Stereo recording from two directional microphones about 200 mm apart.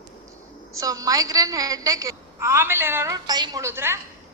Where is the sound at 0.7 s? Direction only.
15° right (ahead or behind).